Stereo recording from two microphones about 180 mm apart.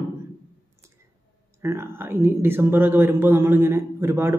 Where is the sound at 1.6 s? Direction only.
15° right (ahead or behind).